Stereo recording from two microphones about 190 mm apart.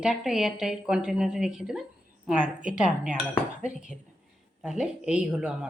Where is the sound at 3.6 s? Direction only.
5° right (ahead or behind).